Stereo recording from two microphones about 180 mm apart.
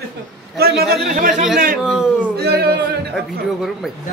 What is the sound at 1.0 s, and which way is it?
Speech, 50° right (ahead or behind).